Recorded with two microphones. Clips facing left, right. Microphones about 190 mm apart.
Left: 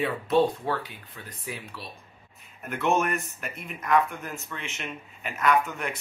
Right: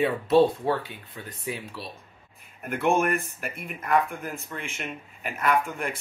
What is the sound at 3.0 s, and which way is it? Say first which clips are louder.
Speech: right 3 dB; 50° right (ahead or behind).